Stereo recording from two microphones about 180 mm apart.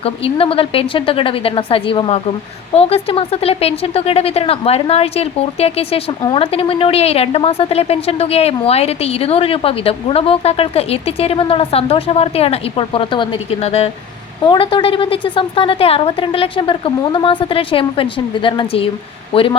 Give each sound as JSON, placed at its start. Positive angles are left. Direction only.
{"t": 0.0, "sound": "a woman's voice", "side_deg": 30}